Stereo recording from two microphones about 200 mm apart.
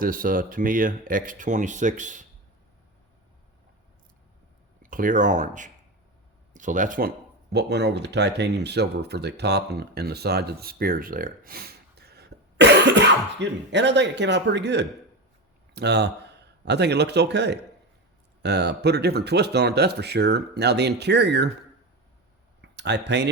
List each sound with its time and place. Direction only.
0.0 s speech: 45° right (ahead or behind)
4.8 s speech: 45° right (ahead or behind)
7.5 s a man's voice: 55° right (ahead or behind)
22.6 s speech: 60° right (ahead or behind)